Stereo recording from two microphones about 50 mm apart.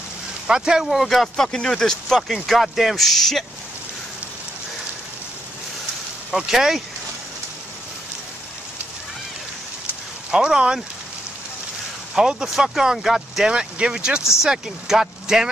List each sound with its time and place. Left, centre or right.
0.5 s speech: centre
1.0 s speech: centre
6.3 s speech: centre
10.3 s speech: centre
12.2 s speech: centre
13.5 s speech: centre